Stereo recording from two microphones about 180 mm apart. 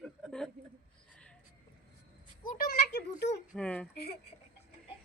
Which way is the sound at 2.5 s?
60° left (ahead or behind).